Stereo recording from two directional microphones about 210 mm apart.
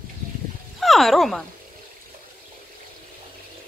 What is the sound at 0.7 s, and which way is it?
Speech, centre (ahead or behind).